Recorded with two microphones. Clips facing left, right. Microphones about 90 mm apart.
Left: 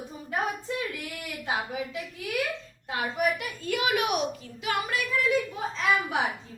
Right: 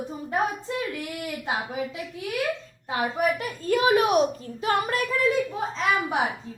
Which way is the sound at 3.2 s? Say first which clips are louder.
Right 2 dB; 35° right (ahead or behind).